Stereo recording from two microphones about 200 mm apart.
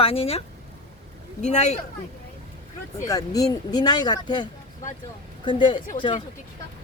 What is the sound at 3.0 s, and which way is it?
Speech, 15° left (ahead or behind).